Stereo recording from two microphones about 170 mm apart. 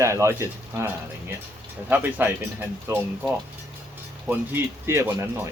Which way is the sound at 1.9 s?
10° right (ahead or behind).